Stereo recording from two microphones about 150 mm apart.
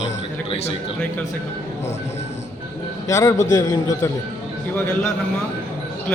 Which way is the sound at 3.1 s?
20° left (ahead or behind).